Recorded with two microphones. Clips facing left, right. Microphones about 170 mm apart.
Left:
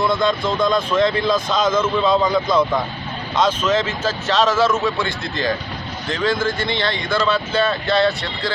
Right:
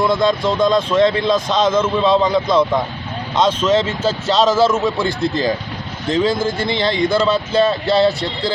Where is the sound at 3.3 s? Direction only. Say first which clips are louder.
Right 3 dB; 25° right (ahead or behind).